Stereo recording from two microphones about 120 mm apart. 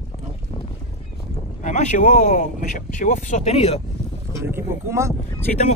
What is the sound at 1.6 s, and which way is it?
Speech, 80° left.